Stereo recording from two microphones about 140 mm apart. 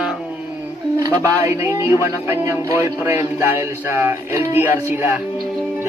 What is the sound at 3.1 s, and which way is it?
Music, 20° right (ahead or behind).